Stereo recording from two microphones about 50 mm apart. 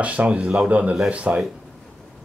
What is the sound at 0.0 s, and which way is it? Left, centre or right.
Speech, right.